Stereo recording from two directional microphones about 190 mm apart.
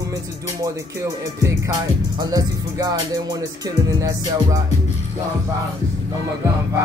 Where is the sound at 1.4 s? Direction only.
20° right (ahead or behind).